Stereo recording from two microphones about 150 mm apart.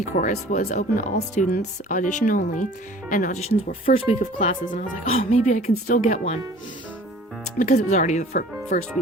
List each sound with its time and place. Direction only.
0.0 s speech: 60° left (ahead or behind)
4.2 s a woman's voice: 55° left (ahead or behind)
7.6 s a woman's voice: 60° left (ahead or behind)